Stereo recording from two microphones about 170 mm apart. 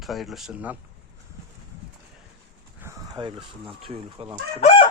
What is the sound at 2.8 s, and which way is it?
Speech, 20° right (ahead or behind).